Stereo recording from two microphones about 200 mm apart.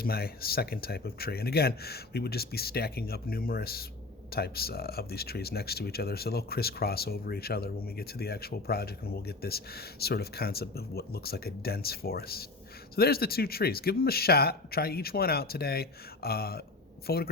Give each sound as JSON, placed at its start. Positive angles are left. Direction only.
{"t": 0.0, "sound": "speech", "side_deg": 50}